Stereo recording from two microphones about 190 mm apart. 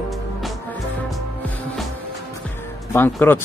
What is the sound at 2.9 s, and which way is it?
Speech, 10° left (ahead or behind).